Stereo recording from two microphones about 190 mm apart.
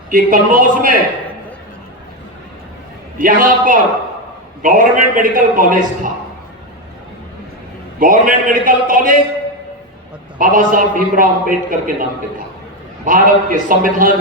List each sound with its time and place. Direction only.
0.1 s a man's voice: 45° right (ahead or behind)
3.2 s a man's voice: 45° right (ahead or behind)
7.9 s a man's voice: 45° right (ahead or behind)
10.3 s a man's voice: 45° right (ahead or behind)
13.1 s a man's voice: 45° right (ahead or behind)